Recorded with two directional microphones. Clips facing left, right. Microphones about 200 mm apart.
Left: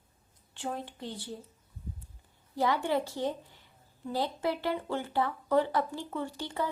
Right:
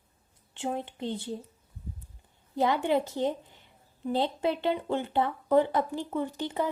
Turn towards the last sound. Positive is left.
turn(degrees=-20)  # may be behind; listen again after turning